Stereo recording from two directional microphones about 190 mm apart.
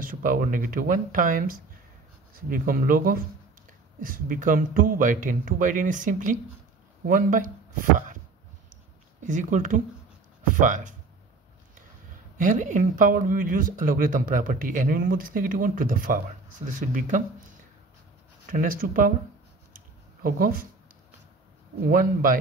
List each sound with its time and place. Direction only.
0.0 s speech: 45° right (ahead or behind)
9.2 s speech: 40° right (ahead or behind)
12.4 s speech: 40° right (ahead or behind)
18.5 s speech: 45° right (ahead or behind)
20.2 s speech: 50° right (ahead or behind)
21.8 s speech: 45° right (ahead or behind)